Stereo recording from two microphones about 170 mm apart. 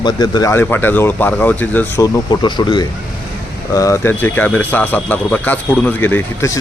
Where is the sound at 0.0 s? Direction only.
25° left (ahead or behind).